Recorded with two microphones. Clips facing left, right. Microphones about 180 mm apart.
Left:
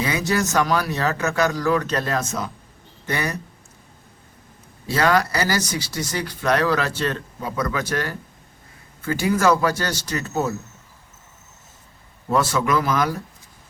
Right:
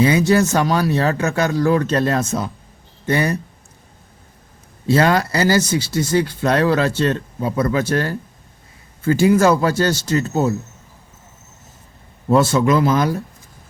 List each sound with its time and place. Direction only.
0.0 s speech: 30° right (ahead or behind)
4.9 s speech: 25° right (ahead or behind)
12.3 s speech: 25° right (ahead or behind)